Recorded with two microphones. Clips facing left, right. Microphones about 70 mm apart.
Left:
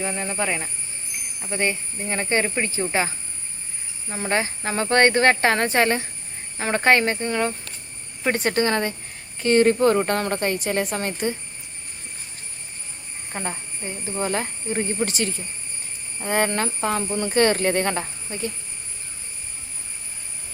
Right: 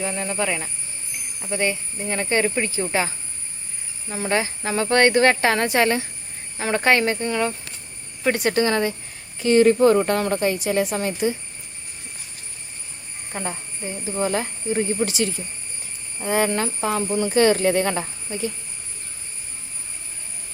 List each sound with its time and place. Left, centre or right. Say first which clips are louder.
0.0 s speech: right 1 dB; left
4.1 s speech: right 1 dB; left
14.3 s speech: right 2 dB; left